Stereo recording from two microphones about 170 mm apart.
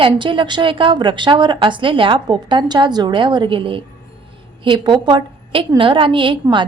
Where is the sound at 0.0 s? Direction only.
30° right (ahead or behind).